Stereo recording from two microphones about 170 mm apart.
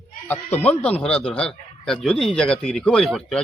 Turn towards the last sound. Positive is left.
turn(degrees=5)  # may be behind; listen again after turning